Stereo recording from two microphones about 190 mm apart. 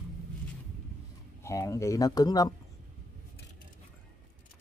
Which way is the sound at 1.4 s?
15° left (ahead or behind).